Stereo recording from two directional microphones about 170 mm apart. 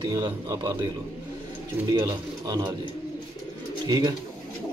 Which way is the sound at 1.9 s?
20° right (ahead or behind).